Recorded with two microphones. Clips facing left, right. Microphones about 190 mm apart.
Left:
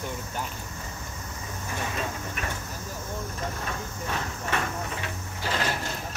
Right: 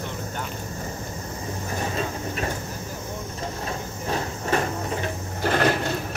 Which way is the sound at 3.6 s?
35° right (ahead or behind).